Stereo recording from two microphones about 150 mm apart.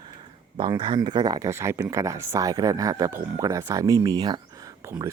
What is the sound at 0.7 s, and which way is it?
Speech, 30° right (ahead or behind).